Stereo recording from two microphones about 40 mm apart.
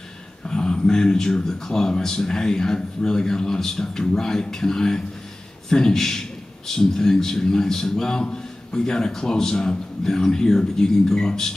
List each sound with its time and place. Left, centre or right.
0.5 s a man's voice: centre